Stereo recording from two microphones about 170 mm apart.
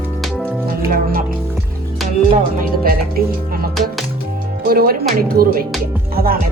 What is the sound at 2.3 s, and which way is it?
Speech, 55° right (ahead or behind).